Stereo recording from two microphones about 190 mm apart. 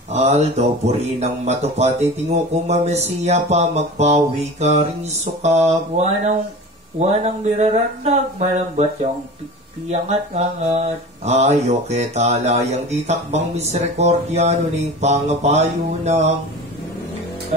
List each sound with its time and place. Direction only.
0.1 s speech: 35° right (ahead or behind)
9.8 s speech: 35° right (ahead or behind)